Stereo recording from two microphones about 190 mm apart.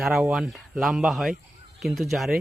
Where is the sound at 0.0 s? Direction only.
Centre (ahead or behind).